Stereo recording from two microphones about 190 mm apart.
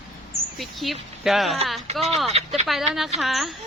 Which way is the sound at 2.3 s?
35° right (ahead or behind).